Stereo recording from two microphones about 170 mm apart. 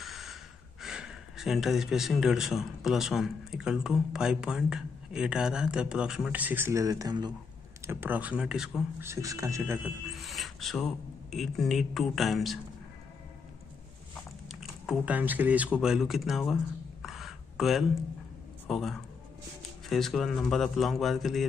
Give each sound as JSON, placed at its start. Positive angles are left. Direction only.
{"t": 0.0, "sound": "speech", "side_deg": 0}
{"t": 7.8, "sound": "speech", "side_deg": -10}
{"t": 9.0, "sound": "speech", "side_deg": -20}
{"t": 10.1, "sound": "speech", "side_deg": 0}
{"t": 14.5, "sound": "speech", "side_deg": -5}
{"t": 17.0, "sound": "a sound", "side_deg": 0}
{"t": 18.7, "sound": "speech", "side_deg": 0}